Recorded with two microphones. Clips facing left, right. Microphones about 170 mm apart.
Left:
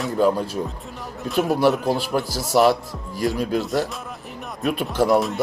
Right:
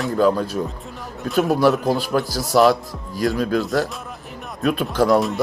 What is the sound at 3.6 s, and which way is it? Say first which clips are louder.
Speech: right 2 dB; centre (ahead or behind).